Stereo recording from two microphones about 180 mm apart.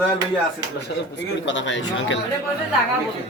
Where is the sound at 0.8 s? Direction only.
70° left (ahead or behind); by 2.2 s 90° left.